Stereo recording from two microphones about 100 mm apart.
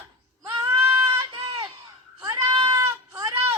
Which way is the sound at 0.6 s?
30° right (ahead or behind).